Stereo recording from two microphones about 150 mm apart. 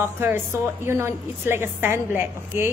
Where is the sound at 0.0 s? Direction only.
15° right (ahead or behind).